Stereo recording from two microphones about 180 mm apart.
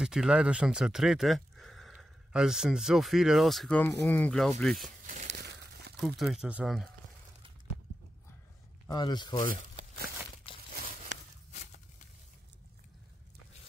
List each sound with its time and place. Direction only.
0.0 s speech: 5° right (ahead or behind)
5.0 s crumpling: 40° right (ahead or behind)
5.3 s crumpling: 70° right (ahead or behind)
5.9 s speech: centre (ahead or behind)
8.8 s speech: 25° left (ahead or behind)
9.5 s crumpling: 50° right (ahead or behind)